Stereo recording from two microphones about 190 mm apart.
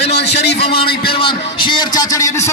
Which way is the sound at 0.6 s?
30° left (ahead or behind).